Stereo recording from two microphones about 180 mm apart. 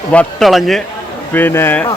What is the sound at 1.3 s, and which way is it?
Speech, 10° left (ahead or behind).